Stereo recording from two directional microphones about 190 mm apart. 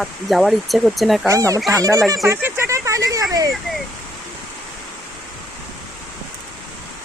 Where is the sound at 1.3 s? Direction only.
15° right (ahead or behind).